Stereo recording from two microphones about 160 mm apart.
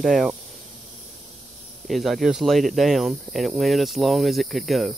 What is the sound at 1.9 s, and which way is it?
Speech, centre (ahead or behind).